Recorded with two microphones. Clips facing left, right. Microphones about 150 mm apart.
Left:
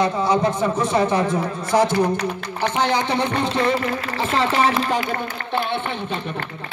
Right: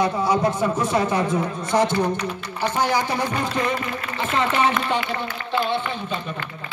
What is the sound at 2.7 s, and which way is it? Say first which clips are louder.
Speech: left 1 dB; 20° left (ahead or behind).